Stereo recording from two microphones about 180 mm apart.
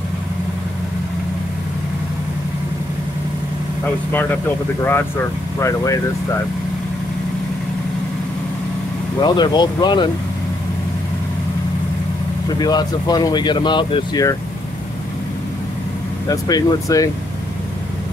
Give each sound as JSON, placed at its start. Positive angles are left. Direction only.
{"t": 5.6, "sound": "speech", "side_deg": 15}
{"t": 9.2, "sound": "speech", "side_deg": 25}
{"t": 12.5, "sound": "speech", "side_deg": 20}
{"t": 16.3, "sound": "speech", "side_deg": 20}